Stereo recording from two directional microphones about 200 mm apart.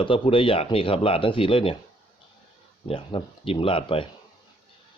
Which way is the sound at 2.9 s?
25° left (ahead or behind).